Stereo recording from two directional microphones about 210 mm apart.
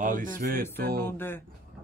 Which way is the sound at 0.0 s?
40° right (ahead or behind).